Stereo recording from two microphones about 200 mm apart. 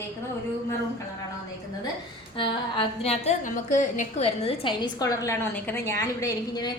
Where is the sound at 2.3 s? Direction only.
25° left (ahead or behind).